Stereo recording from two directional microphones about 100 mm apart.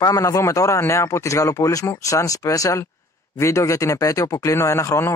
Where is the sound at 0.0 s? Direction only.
35° left (ahead or behind).